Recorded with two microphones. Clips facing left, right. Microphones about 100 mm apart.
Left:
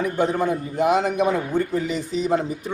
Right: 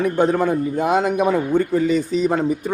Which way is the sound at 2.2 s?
55° right (ahead or behind).